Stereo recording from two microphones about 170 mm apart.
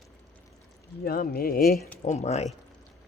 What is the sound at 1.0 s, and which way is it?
Speech, 60° left (ahead or behind).